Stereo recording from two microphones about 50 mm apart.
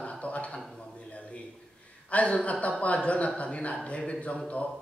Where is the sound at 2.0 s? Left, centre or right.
Left.